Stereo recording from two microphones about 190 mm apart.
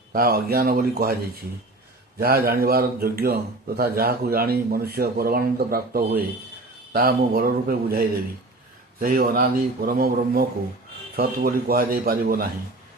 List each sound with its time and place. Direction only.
0.1 s speech: 50° right (ahead or behind)
2.1 s speech: 50° right (ahead or behind)